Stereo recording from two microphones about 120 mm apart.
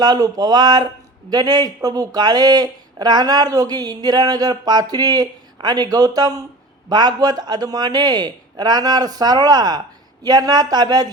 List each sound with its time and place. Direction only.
0.0 s speech: 35° right (ahead or behind)